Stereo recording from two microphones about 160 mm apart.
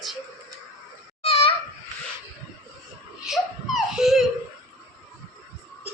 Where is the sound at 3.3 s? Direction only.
Centre (ahead or behind).